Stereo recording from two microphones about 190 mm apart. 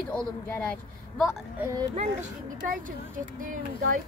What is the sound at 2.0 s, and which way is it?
Speech, 40° right (ahead or behind).